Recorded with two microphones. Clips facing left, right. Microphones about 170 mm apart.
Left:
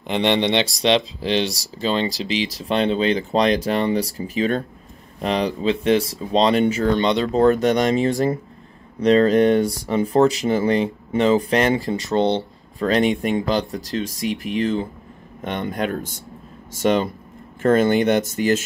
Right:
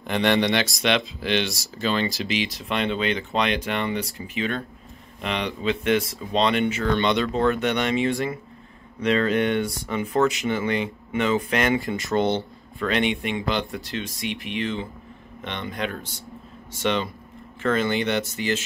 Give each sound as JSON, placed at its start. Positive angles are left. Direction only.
{"t": 0.0, "sound": "speech", "side_deg": 20}